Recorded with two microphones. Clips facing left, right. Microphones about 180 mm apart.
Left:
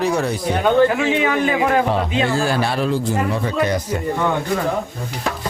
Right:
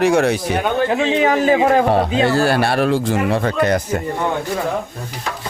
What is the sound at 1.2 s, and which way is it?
Speech, 35° right (ahead or behind).